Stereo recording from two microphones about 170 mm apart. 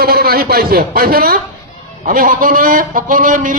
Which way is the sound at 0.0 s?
65° right (ahead or behind).